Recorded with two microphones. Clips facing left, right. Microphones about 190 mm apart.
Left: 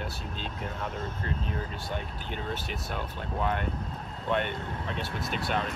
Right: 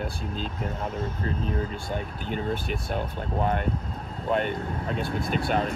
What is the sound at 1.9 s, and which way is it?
Speech, 45° right (ahead or behind).